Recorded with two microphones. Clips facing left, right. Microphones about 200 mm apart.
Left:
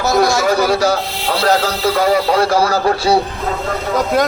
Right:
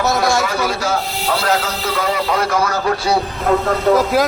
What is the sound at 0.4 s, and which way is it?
Speech, 35° left (ahead or behind).